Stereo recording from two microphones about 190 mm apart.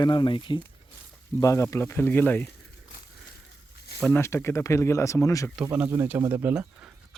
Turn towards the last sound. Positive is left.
turn(degrees=-5)  # may be behind; listen again after turning